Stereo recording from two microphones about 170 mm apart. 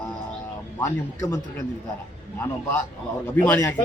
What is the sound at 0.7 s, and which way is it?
Speech, 15° left (ahead or behind).